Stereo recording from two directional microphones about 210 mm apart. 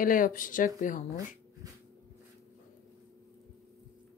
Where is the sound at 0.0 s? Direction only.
40° left (ahead or behind).